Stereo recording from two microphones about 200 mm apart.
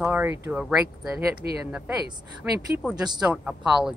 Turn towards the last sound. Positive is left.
turn(degrees=-5)  # may be behind; listen again after turning